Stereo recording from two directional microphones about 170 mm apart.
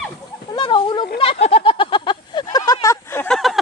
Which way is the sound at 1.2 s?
35° left (ahead or behind).